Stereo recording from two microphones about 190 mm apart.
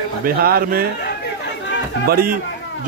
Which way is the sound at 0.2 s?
55° right (ahead or behind).